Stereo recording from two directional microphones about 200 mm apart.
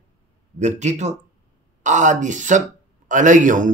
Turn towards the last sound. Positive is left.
turn(degrees=-40)  # may be behind; listen again after turning